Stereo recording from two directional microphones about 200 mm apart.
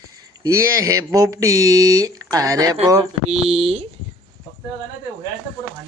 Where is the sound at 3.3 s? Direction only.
30° right (ahead or behind).